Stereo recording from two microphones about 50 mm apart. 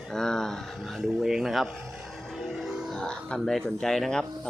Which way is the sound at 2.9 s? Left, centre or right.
Centre.